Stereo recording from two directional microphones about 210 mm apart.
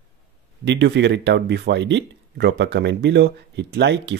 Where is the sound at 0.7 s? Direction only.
55° right (ahead or behind).